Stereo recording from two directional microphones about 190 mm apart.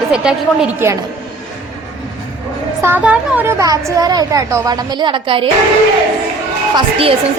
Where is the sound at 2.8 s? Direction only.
10° right (ahead or behind); by 5.5 s 25° right (ahead or behind).